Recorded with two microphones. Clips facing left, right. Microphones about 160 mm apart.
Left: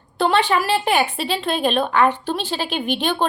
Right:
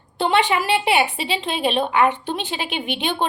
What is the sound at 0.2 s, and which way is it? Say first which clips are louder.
A woman's voice: left 1 dB; 15° right (ahead or behind).